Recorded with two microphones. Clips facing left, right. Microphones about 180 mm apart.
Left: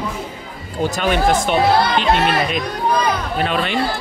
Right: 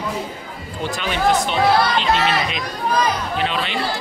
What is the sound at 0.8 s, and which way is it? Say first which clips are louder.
Speech: left 3 dB; 45° left (ahead or behind).